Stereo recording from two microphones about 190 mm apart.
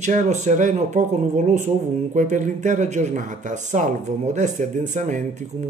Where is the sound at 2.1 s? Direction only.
40° right (ahead or behind).